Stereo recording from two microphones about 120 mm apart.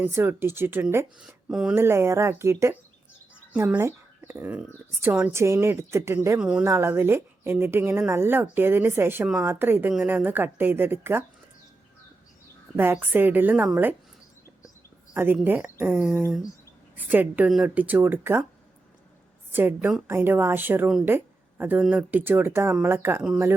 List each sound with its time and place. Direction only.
0.0 s speech: 20° right (ahead or behind)
1.2 s speech: 5° right (ahead or behind)
1.7 s speech: 20° right (ahead or behind)
6.4 s speech: 10° right (ahead or behind)
6.7 s speech: 20° right (ahead or behind)
12.7 s speech: 20° right (ahead or behind)
15.1 s speech: 15° right (ahead or behind)
19.5 s a woman's voice: 15° right (ahead or behind)